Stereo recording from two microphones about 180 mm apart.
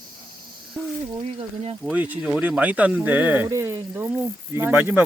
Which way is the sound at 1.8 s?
10° right (ahead or behind).